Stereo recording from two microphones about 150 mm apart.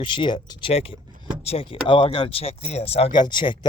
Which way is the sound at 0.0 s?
35° left (ahead or behind).